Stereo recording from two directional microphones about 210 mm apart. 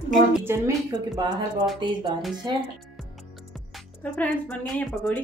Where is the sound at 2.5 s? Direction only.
20° right (ahead or behind).